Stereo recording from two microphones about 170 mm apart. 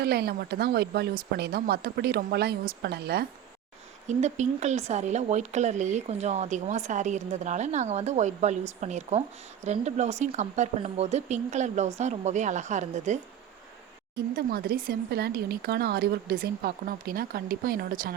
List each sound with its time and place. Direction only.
0.0 s speech: 70° right (ahead or behind)
4.0 s speech: 45° right (ahead or behind)
14.3 s speech: 65° right (ahead or behind)